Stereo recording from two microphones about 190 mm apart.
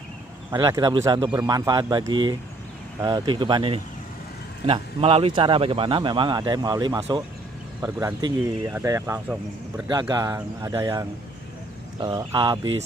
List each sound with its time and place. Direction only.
0.5 s a man's voice: 20° right (ahead or behind)
9.8 s a man's voice: 20° right (ahead or behind)